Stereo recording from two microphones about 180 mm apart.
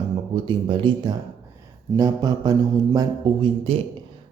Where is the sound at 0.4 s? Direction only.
25° right (ahead or behind).